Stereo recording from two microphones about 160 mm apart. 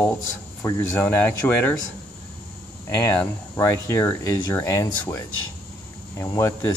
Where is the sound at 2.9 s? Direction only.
10° left (ahead or behind).